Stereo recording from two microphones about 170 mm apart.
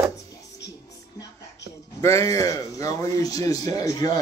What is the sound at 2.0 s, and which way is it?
A man's voice, 15° left (ahead or behind).